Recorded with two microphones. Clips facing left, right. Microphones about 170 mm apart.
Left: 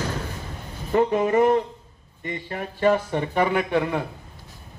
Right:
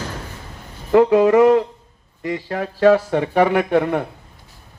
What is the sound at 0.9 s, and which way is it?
Speech, 85° right.